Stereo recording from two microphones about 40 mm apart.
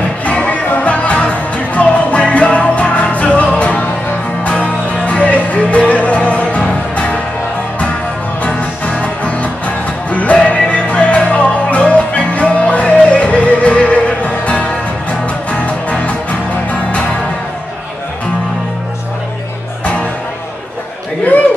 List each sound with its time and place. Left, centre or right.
0.2 s music: left
8.5 s music: left
19.8 s music: left